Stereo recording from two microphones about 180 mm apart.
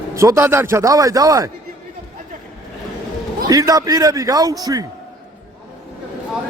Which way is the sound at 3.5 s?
20° right (ahead or behind).